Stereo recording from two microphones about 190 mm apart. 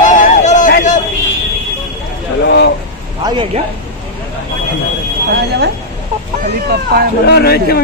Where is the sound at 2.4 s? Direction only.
65° left (ahead or behind).